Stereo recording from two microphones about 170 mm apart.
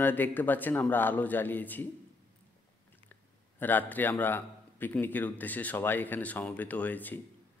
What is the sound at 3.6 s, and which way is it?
A man's voice, 10° left (ahead or behind).